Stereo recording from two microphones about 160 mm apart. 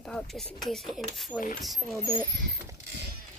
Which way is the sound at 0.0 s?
Centre (ahead or behind).